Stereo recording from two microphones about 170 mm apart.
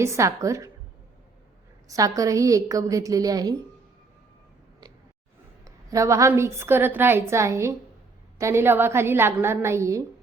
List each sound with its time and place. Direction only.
0.0 s a woman's voice: 15° right (ahead or behind)
1.9 s a woman's voice: 20° right (ahead or behind)
5.6 s a woman's voice: 20° right (ahead or behind)